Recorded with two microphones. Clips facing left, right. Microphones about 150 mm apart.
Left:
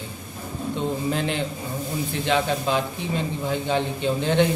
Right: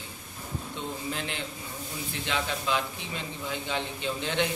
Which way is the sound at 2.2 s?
50° left (ahead or behind).